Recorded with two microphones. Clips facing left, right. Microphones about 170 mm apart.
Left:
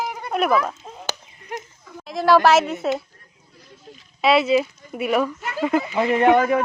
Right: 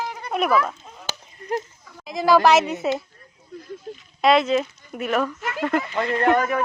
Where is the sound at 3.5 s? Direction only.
50° right (ahead or behind).